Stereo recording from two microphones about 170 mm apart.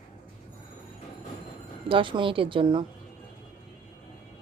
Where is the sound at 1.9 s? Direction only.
30° right (ahead or behind).